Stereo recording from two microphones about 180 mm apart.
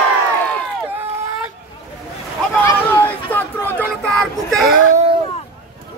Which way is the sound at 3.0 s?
10° left (ahead or behind).